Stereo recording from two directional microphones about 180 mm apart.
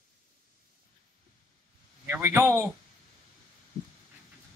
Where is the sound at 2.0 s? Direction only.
10° right (ahead or behind).